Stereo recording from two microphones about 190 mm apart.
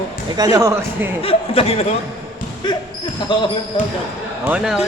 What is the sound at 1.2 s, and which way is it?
Speech, 30° left (ahead or behind).